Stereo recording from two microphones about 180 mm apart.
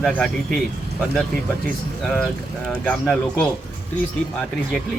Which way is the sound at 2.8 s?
5° left (ahead or behind).